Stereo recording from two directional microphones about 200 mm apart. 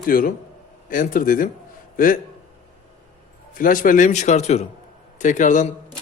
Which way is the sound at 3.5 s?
45° left (ahead or behind).